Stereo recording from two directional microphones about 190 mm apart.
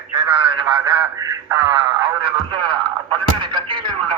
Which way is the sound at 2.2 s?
25° right (ahead or behind).